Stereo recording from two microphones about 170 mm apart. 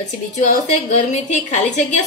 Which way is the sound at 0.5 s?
40° left (ahead or behind).